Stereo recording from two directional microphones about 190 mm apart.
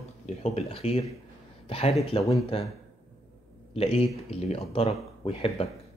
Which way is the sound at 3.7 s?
30° left (ahead or behind).